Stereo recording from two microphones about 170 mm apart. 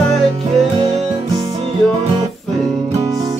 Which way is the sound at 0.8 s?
35° right (ahead or behind).